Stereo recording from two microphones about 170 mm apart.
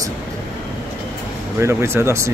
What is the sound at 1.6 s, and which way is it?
Speech, 15° right (ahead or behind).